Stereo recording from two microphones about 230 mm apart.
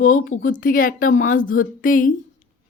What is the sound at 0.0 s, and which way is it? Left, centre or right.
A woman's voice, left.